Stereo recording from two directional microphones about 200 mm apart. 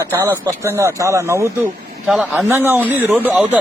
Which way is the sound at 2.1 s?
Centre (ahead or behind).